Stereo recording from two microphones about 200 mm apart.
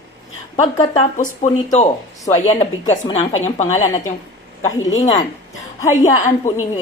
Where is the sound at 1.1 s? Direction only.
40° left (ahead or behind).